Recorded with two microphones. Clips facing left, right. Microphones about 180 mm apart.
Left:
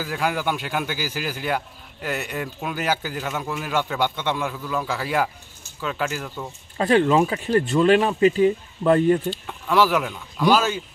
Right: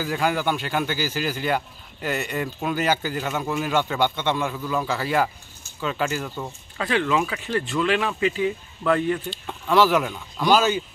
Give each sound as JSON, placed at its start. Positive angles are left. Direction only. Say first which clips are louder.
{"t": 0.0, "sound": "speech", "louder": "right 1 dB", "side_deg": 5}
{"t": 6.8, "sound": "speech", "louder": "left 5 dB", "side_deg": 35}
{"t": 9.5, "sound": "speech", "louder": "right 1 dB", "side_deg": 5}